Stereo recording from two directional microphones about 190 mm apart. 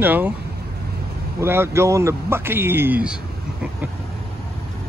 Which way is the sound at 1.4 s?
10° right (ahead or behind).